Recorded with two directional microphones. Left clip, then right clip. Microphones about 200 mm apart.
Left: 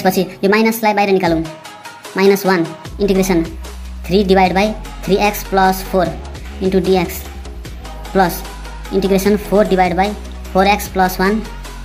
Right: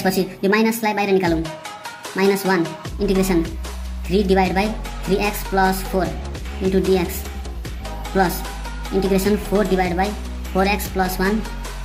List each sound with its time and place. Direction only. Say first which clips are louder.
0.0 s speech: left 5 dB; 15° left (ahead or behind)
8.1 s speech: left 5 dB; 15° left (ahead or behind)